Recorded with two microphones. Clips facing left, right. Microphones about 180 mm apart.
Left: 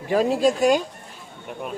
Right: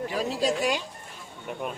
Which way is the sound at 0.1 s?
55° left (ahead or behind).